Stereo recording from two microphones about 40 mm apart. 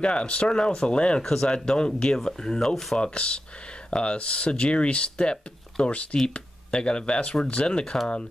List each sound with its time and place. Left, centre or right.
0.0 s speech: left
1.2 s speech: centre
3.0 s speech: left